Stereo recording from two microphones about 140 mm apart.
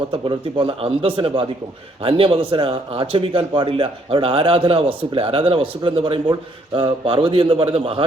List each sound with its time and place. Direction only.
0.3 s a man's voice: 35° right (ahead or behind)